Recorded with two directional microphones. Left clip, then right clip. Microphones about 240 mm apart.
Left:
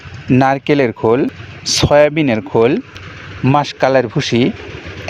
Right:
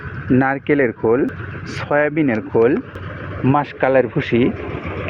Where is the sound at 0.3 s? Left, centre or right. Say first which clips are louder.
Left 4 dB; left.